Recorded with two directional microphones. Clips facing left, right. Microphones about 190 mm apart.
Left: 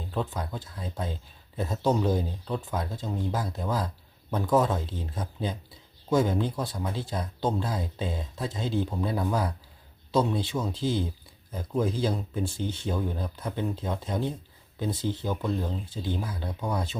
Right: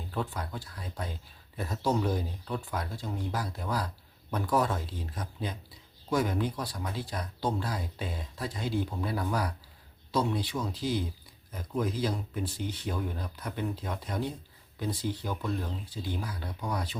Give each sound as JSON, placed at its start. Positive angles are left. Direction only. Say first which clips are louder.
{"t": 0.1, "sound": "speech", "louder": "left 3 dB", "side_deg": 20}